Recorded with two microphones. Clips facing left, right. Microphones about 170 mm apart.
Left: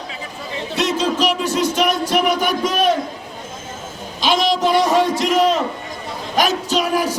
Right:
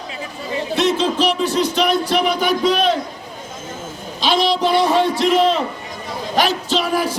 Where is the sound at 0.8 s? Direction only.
40° left (ahead or behind).